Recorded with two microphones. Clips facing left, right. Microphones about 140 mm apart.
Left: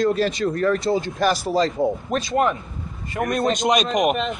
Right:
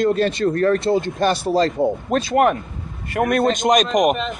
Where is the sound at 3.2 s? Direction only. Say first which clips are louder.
Right 5 dB; 55° right (ahead or behind).